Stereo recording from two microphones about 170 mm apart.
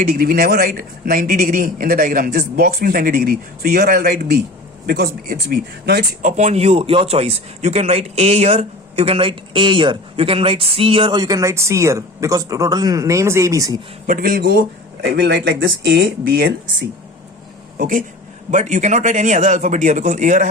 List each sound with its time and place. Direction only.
0.1 s a man's voice: 60° right (ahead or behind); by 6.1 s 75° right (ahead or behind)
6.2 s a man's voice: 45° right (ahead or behind); by 13.8 s 20° right (ahead or behind)
14.1 s a man's voice: 60° right (ahead or behind)
15.1 s speech: 90° right
17.7 s speech: 50° right (ahead or behind)